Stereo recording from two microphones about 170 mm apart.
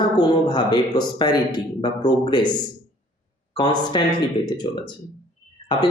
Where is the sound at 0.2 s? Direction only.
25° left (ahead or behind).